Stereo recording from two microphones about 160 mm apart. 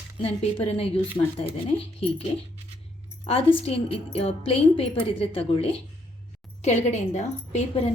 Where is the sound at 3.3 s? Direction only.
35° left (ahead or behind).